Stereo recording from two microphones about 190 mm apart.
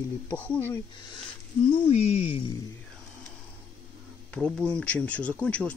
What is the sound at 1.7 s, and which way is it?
Speech, 30° left (ahead or behind).